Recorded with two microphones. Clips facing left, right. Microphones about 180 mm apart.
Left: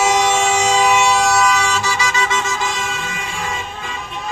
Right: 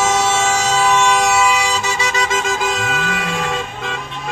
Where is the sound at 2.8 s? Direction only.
70° right (ahead or behind).